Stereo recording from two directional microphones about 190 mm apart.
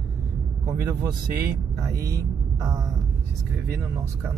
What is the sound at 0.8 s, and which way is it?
Speech, 15° right (ahead or behind).